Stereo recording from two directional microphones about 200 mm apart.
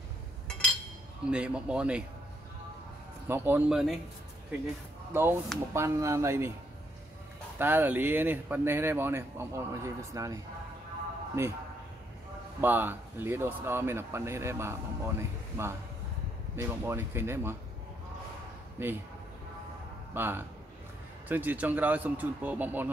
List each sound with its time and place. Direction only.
1.3 s speech: 5° right (ahead or behind)
3.3 s speech: 10° right (ahead or behind)
5.1 s speech: 10° right (ahead or behind)
7.5 s speech: 10° right (ahead or behind)
12.5 s speech: 10° right (ahead or behind)
18.8 s speech: 10° right (ahead or behind)
20.2 s speech: 10° right (ahead or behind)